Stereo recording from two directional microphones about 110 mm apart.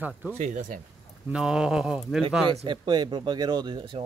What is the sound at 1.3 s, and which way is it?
Speech, 5° right (ahead or behind).